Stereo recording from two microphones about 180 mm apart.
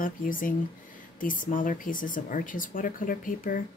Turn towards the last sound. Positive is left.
turn(degrees=50)  # may be behind; listen again after turning